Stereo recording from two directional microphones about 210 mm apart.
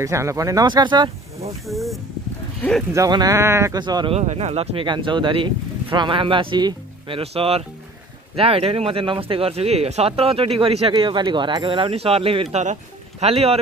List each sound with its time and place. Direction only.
0.0 s speech: 15° right (ahead or behind)
1.7 s speech: centre (ahead or behind)
2.9 s speech: 15° right (ahead or behind)